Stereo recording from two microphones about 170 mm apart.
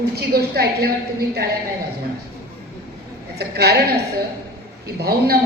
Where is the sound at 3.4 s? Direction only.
70° right (ahead or behind).